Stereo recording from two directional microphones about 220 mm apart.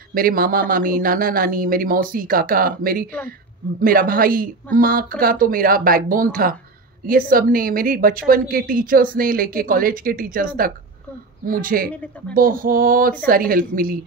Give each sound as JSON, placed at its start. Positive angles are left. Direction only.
{"t": 0.1, "sound": "a woman's voice", "side_deg": -40}
{"t": 11.9, "sound": "speech", "side_deg": 5}
{"t": 12.4, "sound": "a woman's voice", "side_deg": -40}